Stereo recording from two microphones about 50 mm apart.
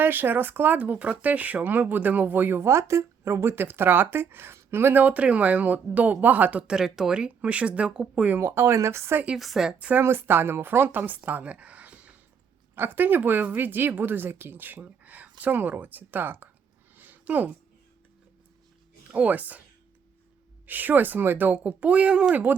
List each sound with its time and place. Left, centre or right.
0.0 s speech: right
2.6 s speech: right
5.0 s speech: right
6.7 s speech: centre
7.2 s speech: right
8.6 s speech: right
9.4 s speech: centre
10.0 s speech: right
12.7 s speech: right
16.9 s a sound: right
19.1 s speech: right
20.7 s speech: right